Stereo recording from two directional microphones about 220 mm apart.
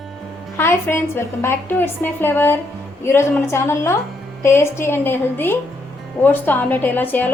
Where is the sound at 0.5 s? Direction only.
10° left (ahead or behind).